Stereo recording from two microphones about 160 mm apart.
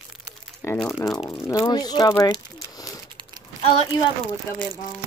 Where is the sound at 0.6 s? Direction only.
15° left (ahead or behind).